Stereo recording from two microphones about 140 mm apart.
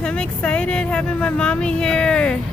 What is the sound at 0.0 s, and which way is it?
Speech, 5° left (ahead or behind).